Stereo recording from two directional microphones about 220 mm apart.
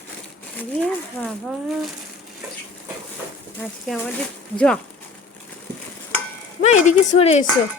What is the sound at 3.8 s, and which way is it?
Speech, 5° left (ahead or behind).